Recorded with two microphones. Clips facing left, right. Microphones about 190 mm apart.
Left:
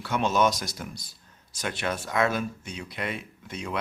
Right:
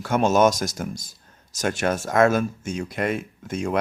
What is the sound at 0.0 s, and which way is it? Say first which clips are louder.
Speech: right 6 dB; 45° right (ahead or behind).